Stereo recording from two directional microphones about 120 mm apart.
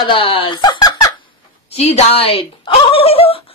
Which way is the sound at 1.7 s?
60° left (ahead or behind).